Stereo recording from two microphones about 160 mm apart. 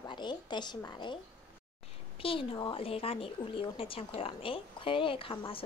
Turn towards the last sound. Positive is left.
turn(degrees=35)  # may be behind; listen again after turning